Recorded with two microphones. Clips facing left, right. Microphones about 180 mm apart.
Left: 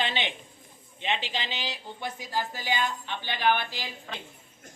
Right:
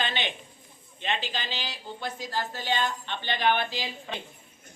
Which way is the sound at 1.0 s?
20° left (ahead or behind).